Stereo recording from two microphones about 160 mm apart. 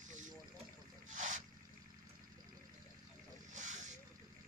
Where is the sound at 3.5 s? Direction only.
50° right (ahead or behind).